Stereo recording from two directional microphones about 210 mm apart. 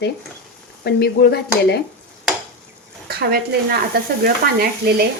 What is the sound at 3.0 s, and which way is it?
Frying, 50° right (ahead or behind).